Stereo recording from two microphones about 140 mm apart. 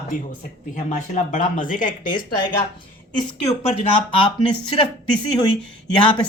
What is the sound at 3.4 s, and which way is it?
Speech, 45° left (ahead or behind).